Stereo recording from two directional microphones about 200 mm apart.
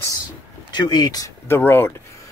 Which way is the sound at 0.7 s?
20° left (ahead or behind).